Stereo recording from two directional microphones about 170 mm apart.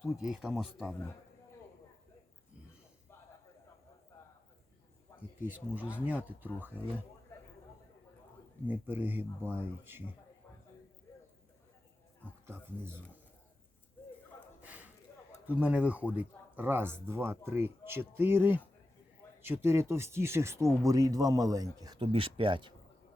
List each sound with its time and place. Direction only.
0.0 s speech: centre (ahead or behind)
5.4 s speech: 10° right (ahead or behind)
8.6 s speech: 10° right (ahead or behind)
14.6 s a sound: 10° right (ahead or behind)
15.4 s speech: 10° right (ahead or behind); by 22.7 s 30° right (ahead or behind)